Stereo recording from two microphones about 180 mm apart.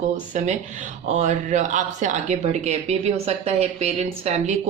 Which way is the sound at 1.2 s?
45° right (ahead or behind).